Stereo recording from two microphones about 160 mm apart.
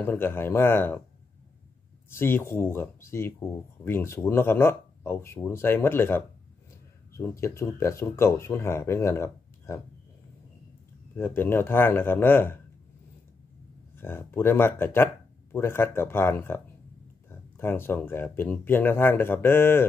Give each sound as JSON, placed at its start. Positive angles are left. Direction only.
{"t": 0.0, "sound": "speech", "side_deg": 15}
{"t": 2.0, "sound": "speech", "side_deg": 15}
{"t": 11.1, "sound": "speech", "side_deg": 15}
{"t": 13.9, "sound": "speech", "side_deg": 15}